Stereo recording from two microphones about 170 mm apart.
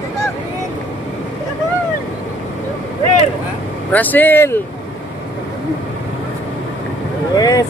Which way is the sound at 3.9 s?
10° left (ahead or behind).